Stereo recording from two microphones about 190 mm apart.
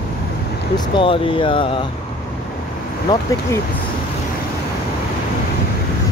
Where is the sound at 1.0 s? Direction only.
25° left (ahead or behind).